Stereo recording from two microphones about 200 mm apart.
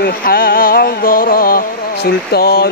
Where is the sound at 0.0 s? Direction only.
45° left (ahead or behind).